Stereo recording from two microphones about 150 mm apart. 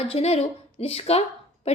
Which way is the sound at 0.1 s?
45° left (ahead or behind).